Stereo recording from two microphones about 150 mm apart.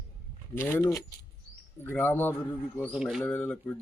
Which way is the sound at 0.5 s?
15° left (ahead or behind).